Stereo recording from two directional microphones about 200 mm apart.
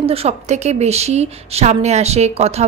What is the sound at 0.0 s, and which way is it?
A woman's voice, 30° right (ahead or behind).